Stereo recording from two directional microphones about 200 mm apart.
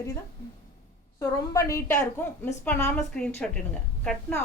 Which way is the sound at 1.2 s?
15° left (ahead or behind).